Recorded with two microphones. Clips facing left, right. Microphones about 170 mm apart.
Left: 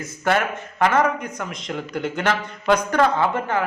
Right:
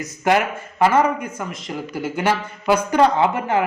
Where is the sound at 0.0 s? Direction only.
15° right (ahead or behind).